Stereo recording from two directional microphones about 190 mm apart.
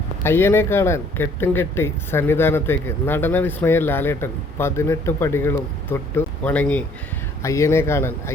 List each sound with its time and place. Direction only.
0.2 s speech: 10° left (ahead or behind)